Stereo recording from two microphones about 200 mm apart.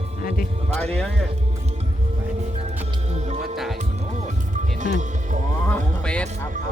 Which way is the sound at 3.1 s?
35° right (ahead or behind).